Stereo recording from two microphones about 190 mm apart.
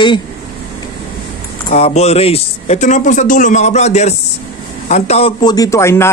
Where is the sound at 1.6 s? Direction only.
35° left (ahead or behind); by 6.1 s 15° left (ahead or behind).